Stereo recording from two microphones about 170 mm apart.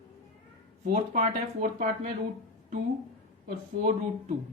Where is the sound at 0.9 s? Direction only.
45° right (ahead or behind).